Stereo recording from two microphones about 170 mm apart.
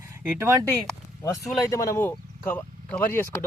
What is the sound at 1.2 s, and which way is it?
Speech, 20° left (ahead or behind).